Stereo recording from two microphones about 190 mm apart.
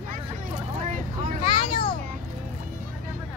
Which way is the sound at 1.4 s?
25° left (ahead or behind).